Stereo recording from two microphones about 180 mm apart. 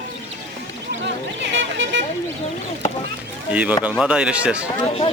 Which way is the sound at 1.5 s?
90° right.